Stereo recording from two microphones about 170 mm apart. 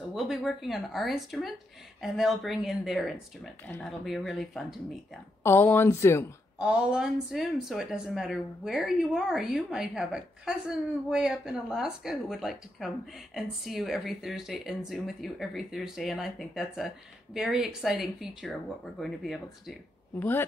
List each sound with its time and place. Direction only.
0.1 s speech: centre (ahead or behind)
3.6 s a woman's voice: 10° left (ahead or behind)
5.4 s a woman's voice: 10° left (ahead or behind)
6.6 s speech: 5° right (ahead or behind)
20.2 s a woman's voice: 10° left (ahead or behind)